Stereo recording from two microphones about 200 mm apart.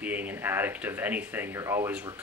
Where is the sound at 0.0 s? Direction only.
10° right (ahead or behind).